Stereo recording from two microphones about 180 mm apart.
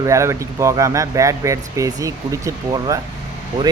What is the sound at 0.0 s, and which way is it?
Speech, 15° right (ahead or behind).